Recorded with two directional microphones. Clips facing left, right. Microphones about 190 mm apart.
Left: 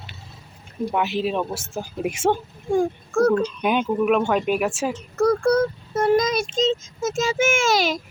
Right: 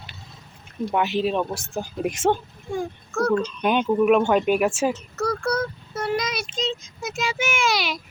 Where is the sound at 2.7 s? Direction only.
50° left (ahead or behind).